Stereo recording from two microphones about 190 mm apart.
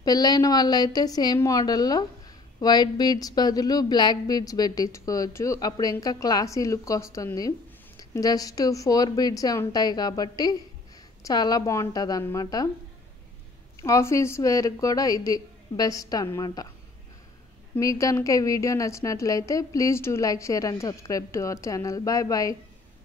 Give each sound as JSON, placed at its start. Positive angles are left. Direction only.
{"t": 0.0, "sound": "a woman's voice", "side_deg": 20}
{"t": 13.7, "sound": "a woman's voice", "side_deg": 15}
{"t": 17.7, "sound": "a woman's voice", "side_deg": 15}